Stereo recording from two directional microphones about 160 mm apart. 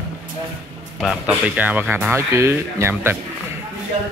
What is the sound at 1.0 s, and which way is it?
Speech, 5° right (ahead or behind).